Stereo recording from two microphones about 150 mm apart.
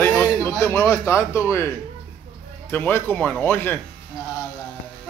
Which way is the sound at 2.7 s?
10° left (ahead or behind).